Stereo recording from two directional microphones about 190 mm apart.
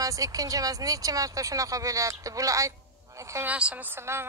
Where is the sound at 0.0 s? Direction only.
20° right (ahead or behind).